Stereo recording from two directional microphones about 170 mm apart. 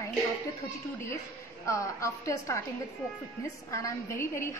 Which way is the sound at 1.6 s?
20° left (ahead or behind).